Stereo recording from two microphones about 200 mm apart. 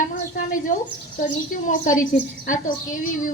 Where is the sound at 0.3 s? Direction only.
40° left (ahead or behind).